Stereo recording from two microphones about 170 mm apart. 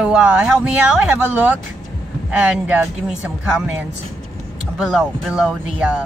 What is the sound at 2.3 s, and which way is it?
Speech, 5° right (ahead or behind).